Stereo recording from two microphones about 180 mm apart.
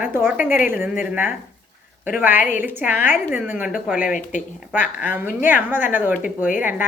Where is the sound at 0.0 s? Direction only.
10° right (ahead or behind).